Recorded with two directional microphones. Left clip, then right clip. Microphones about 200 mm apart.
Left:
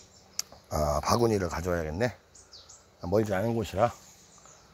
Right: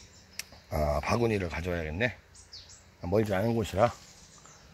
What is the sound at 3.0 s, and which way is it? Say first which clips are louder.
Speech: left 1 dB; 10° left (ahead or behind).